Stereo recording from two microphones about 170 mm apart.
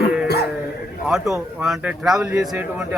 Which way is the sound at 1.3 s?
5° right (ahead or behind).